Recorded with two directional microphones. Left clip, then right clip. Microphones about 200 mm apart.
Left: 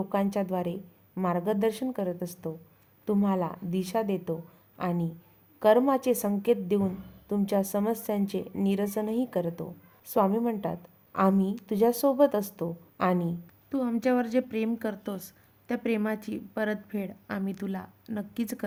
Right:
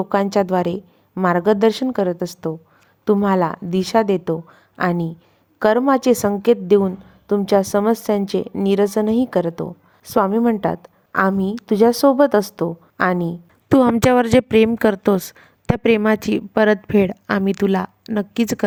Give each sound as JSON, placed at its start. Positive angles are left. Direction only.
{"t": 0.1, "sound": "a woman's voice", "side_deg": -30}
{"t": 13.7, "sound": "a woman's voice", "side_deg": -50}